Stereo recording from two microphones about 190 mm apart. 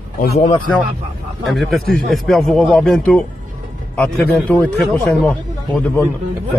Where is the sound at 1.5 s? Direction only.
Centre (ahead or behind).